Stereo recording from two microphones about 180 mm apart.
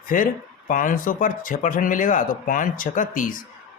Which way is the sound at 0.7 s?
50° left (ahead or behind).